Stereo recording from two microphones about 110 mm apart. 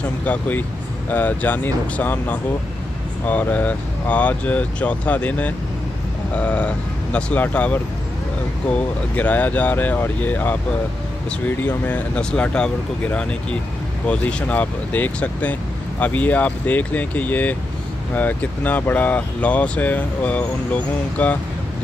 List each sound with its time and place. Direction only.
0.2 s speech: 15° left (ahead or behind)